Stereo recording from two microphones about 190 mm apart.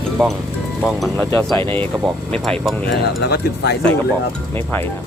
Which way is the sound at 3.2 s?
60° left (ahead or behind).